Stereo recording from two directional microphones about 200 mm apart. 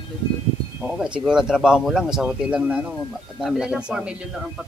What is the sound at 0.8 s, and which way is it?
Speech, 5° right (ahead or behind).